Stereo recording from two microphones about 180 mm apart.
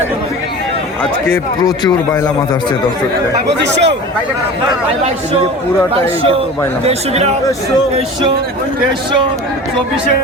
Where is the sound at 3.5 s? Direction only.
75° right (ahead or behind).